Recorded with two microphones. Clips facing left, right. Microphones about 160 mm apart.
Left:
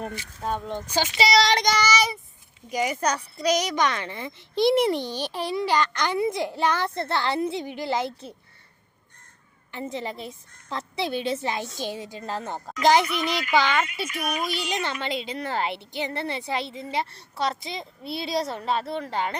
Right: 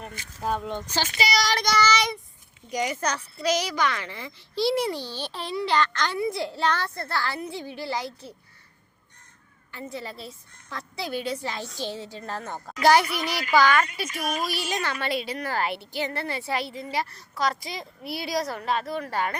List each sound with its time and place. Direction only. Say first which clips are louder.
0.4 s speech: right 1 dB; 5° right (ahead or behind)
1.0 s a child's voice: left 6 dB; 25° left (ahead or behind)
9.7 s a child's voice: left 4 dB; 20° left (ahead or behind)